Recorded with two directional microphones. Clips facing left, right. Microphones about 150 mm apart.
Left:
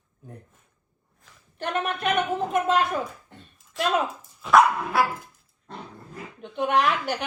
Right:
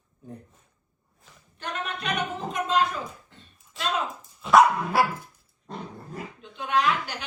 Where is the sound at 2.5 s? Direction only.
55° left (ahead or behind).